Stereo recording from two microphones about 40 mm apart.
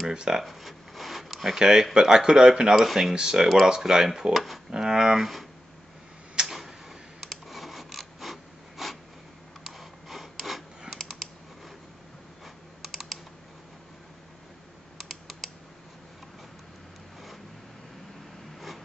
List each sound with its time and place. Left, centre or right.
0.1 s speech: centre
0.4 s a sound: centre
2.0 s speech: centre
4.6 s speech: centre
5.2 s speech: centre
6.4 s tick-tock: centre
7.2 s a sound: centre
11.0 s typing: centre
12.8 s typing: centre
15.0 s typing: centre